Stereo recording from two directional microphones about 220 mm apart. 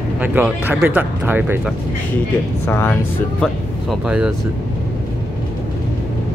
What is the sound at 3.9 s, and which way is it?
Speech, 5° right (ahead or behind).